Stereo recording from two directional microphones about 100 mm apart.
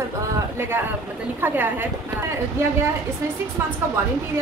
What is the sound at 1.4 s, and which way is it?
Speech, 20° right (ahead or behind).